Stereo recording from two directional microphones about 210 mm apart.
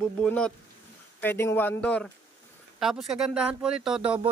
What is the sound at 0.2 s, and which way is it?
A man's voice, 5° left (ahead or behind).